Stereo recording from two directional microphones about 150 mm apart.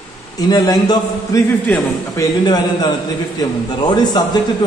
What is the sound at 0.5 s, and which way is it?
A man's voice, 25° left (ahead or behind).